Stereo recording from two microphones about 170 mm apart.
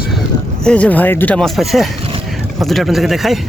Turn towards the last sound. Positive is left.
turn(degrees=0)  # may be behind; listen again after turning